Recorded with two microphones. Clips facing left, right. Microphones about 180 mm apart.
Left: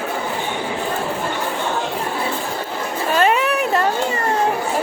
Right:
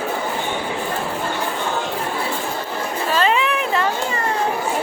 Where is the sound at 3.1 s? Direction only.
45° left (ahead or behind).